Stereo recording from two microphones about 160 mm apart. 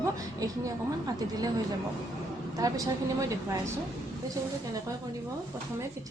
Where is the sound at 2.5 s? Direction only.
20° right (ahead or behind).